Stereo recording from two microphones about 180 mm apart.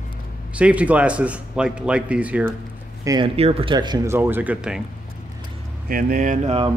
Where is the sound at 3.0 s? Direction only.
20° right (ahead or behind).